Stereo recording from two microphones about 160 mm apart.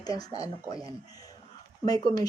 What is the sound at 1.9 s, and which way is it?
Speech, 30° left (ahead or behind).